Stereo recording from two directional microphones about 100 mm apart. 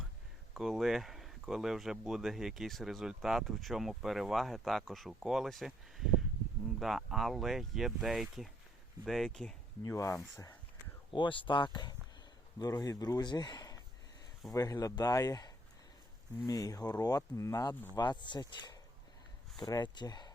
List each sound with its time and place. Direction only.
0.5 s speech: centre (ahead or behind)
9.8 s speech: 30° left (ahead or behind)
11.1 s speech: 55° left (ahead or behind)